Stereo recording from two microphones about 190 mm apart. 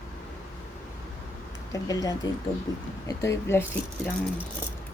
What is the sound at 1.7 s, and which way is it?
Speech, 20° left (ahead or behind).